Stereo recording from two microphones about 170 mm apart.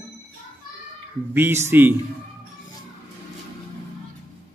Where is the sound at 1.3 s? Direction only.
10° right (ahead or behind).